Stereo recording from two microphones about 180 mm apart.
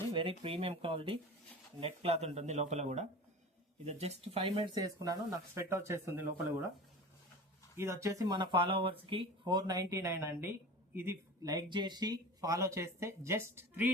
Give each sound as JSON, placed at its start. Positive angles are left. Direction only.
{"t": 0.1, "sound": "speech", "side_deg": -30}
{"t": 7.8, "sound": "speech", "side_deg": -15}